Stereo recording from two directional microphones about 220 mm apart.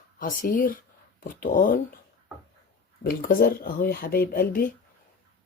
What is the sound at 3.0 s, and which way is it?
Speech, 40° left (ahead or behind).